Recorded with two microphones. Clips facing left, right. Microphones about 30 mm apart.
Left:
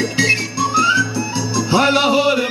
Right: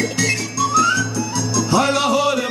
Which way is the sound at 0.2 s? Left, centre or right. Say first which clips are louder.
Left 6 dB; left.